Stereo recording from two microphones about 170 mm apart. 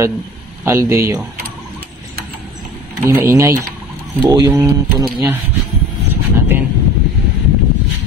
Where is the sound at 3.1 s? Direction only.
15° right (ahead or behind).